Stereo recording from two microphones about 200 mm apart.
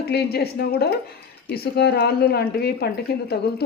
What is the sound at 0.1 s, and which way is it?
A woman's voice, 55° left (ahead or behind).